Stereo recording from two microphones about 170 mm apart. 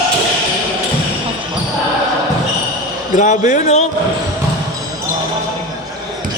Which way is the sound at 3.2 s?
45° left (ahead or behind).